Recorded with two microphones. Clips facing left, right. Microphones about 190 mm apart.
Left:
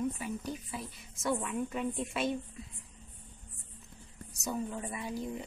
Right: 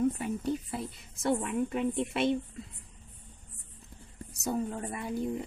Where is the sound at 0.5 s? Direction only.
60° right (ahead or behind).